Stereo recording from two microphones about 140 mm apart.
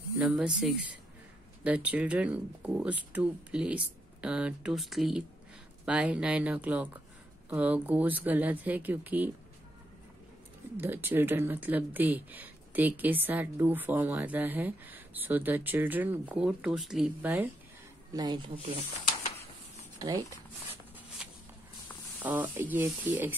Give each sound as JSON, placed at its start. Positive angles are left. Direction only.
{"t": 0.2, "sound": "speech", "side_deg": -5}
{"t": 10.8, "sound": "speech", "side_deg": -15}
{"t": 18.1, "sound": "speech", "side_deg": -30}
{"t": 20.0, "sound": "speech", "side_deg": -25}
{"t": 21.2, "sound": "a sound", "side_deg": -10}
{"t": 22.2, "sound": "speech", "side_deg": -10}